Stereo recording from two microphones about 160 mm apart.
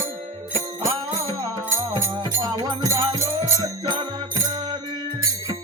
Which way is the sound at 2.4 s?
30° right (ahead or behind).